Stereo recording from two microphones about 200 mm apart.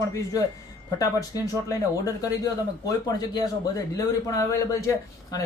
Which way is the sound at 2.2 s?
20° left (ahead or behind).